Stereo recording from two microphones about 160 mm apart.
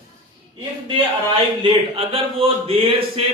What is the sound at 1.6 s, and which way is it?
Speech, 35° right (ahead or behind).